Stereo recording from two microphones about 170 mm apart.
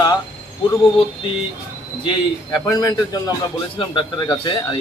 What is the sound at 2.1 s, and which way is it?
Speech, 25° left (ahead or behind).